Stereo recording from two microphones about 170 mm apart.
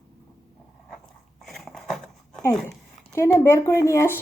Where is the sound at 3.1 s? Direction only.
15° left (ahead or behind).